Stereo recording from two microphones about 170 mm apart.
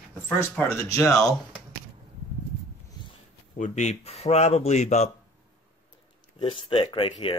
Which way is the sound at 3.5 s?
45° left (ahead or behind).